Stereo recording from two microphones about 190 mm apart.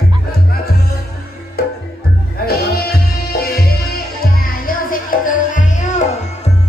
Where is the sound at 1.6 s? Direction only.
55° left (ahead or behind).